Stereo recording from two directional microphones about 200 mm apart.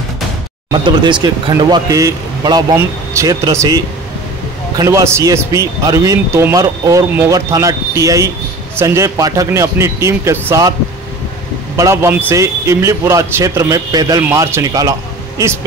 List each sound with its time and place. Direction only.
0.7 s speech: 25° right (ahead or behind)
11.7 s speech: 15° right (ahead or behind)